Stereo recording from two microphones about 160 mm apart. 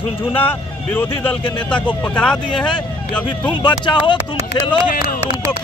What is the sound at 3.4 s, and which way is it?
Speech, 30° left (ahead or behind).